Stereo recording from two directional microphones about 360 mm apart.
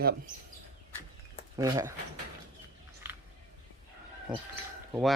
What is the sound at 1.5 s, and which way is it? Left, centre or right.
Speech, centre.